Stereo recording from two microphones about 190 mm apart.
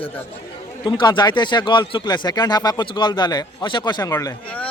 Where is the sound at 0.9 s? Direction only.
25° left (ahead or behind).